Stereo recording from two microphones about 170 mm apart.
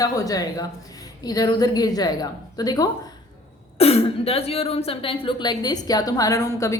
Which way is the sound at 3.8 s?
35° left (ahead or behind).